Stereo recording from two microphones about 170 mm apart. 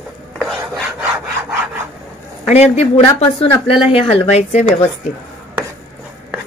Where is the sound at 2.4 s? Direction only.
40° left (ahead or behind).